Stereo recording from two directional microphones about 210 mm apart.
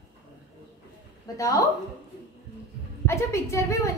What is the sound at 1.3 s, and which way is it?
Speech, 15° left (ahead or behind).